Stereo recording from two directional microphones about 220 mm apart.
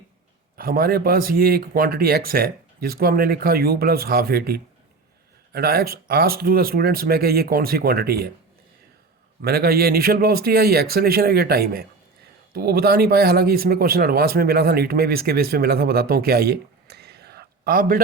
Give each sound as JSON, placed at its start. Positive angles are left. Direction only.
{"t": 0.5, "sound": "speech", "side_deg": -40}
{"t": 9.4, "sound": "speech", "side_deg": -45}